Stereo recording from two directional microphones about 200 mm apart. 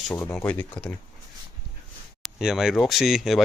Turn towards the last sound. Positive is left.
turn(degrees=0)  # may be behind; listen again after turning